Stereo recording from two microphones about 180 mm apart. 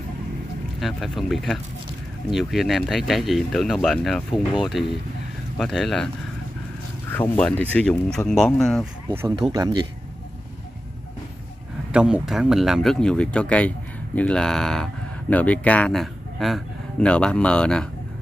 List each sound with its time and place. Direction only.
0.7 s speech: centre (ahead or behind)
7.1 s speech: 10° left (ahead or behind)
9.5 s speech: 20° right (ahead or behind)
11.9 s speech: 5° right (ahead or behind)